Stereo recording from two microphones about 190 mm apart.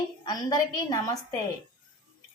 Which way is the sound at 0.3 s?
20° left (ahead or behind).